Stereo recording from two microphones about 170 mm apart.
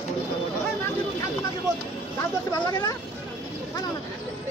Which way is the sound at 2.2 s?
20° left (ahead or behind).